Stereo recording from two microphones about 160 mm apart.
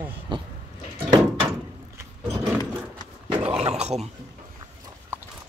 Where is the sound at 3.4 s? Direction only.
40° right (ahead or behind).